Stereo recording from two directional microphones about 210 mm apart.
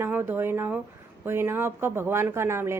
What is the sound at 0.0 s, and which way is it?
Speech, 10° right (ahead or behind).